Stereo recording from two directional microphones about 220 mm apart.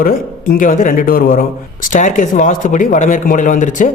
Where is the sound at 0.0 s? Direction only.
40° left (ahead or behind).